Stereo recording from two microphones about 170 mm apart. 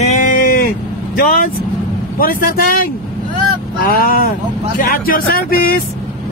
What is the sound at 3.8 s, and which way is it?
Speech, 60° left (ahead or behind).